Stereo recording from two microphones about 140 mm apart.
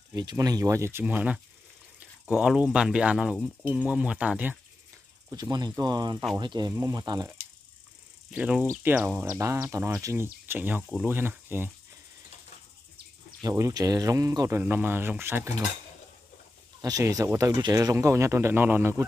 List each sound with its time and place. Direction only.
0.1 s speech: 30° right (ahead or behind); by 4.6 s 10° right (ahead or behind)
5.3 s speech: 30° right (ahead or behind)
8.3 s speech: 10° right (ahead or behind)
10.8 s speech: centre (ahead or behind)
11.1 s speech: 15° right (ahead or behind)
13.4 s speech: 25° right (ahead or behind)
14.6 s speech: 15° right (ahead or behind)
16.8 s speech: 25° right (ahead or behind)